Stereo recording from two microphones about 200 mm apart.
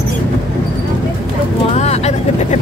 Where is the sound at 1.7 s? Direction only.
35° left (ahead or behind).